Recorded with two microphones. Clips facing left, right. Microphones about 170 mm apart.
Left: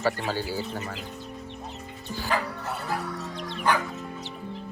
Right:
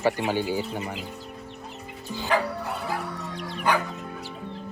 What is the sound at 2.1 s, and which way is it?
Speech, 20° right (ahead or behind).